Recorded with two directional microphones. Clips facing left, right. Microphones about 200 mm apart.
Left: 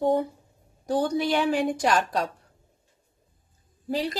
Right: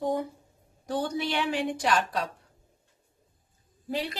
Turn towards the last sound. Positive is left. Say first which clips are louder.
# left 4 dB
turn(degrees=35)  # may be behind; listen again after turning